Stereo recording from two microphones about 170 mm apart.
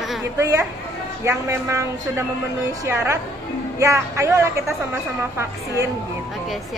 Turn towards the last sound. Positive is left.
turn(degrees=-15)  # may be behind; listen again after turning